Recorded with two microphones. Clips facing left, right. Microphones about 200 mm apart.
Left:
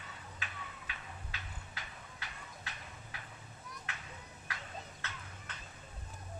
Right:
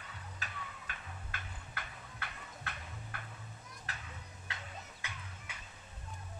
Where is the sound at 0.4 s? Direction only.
50° right (ahead or behind).